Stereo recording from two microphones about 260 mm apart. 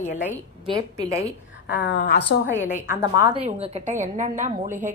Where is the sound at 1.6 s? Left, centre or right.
Left.